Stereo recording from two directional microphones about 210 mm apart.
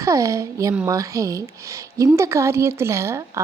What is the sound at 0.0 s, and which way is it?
A woman's voice, 15° right (ahead or behind).